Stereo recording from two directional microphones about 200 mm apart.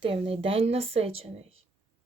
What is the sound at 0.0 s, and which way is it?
A woman's voice, 30° right (ahead or behind).